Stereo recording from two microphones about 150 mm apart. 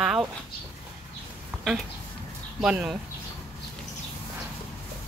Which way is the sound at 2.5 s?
5° right (ahead or behind).